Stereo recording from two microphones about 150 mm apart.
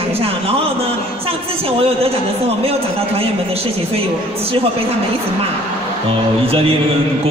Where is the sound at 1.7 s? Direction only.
40° right (ahead or behind).